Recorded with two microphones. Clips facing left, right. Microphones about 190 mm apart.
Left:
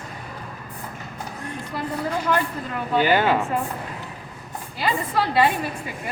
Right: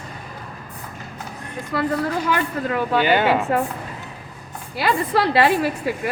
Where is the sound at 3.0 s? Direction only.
Centre (ahead or behind).